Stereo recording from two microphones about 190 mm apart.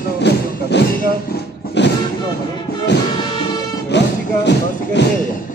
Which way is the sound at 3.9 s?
65° left (ahead or behind).